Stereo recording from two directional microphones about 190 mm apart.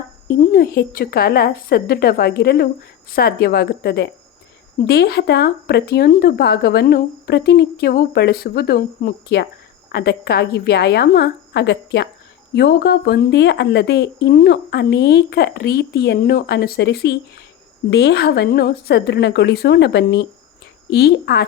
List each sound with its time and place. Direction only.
0.3 s a woman's voice: 50° left (ahead or behind)